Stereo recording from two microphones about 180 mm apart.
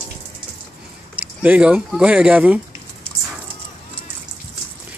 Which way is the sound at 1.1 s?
5° right (ahead or behind).